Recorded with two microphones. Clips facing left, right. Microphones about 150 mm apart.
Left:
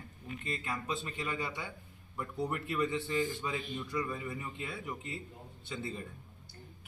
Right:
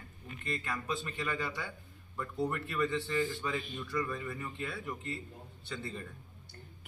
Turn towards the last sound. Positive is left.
turn(degrees=20)  # may be behind; listen again after turning